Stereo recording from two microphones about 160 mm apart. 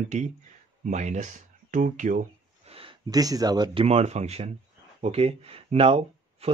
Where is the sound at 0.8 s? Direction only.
50° right (ahead or behind).